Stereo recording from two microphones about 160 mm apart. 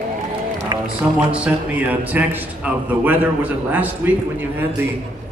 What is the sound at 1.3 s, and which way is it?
A man's voice, 10° right (ahead or behind).